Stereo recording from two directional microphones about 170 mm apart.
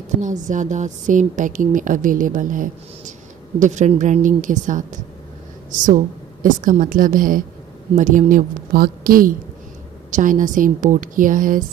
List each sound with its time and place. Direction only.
0.2 s a woman's voice: 45° right (ahead or behind)